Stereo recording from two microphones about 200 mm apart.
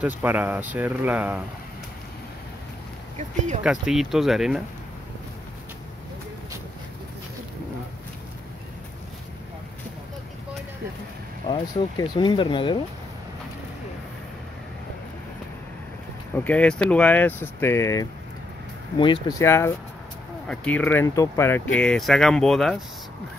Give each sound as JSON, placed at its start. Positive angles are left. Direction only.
{"t": 0.0, "sound": "speech", "side_deg": -10}
{"t": 3.2, "sound": "speech", "side_deg": -35}
{"t": 3.6, "sound": "speech", "side_deg": -5}
{"t": 11.4, "sound": "speech", "side_deg": 25}
{"t": 16.3, "sound": "speech", "side_deg": 5}